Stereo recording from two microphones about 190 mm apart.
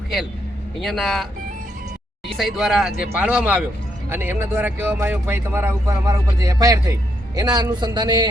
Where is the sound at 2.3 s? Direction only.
Centre (ahead or behind).